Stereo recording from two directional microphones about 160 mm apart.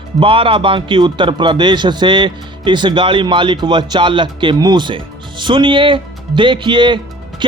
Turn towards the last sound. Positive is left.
turn(degrees=-30)  # may be behind; listen again after turning